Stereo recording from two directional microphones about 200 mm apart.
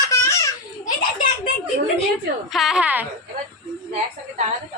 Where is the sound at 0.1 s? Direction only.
15° left (ahead or behind).